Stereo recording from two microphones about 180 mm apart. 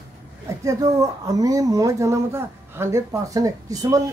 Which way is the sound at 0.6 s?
20° right (ahead or behind).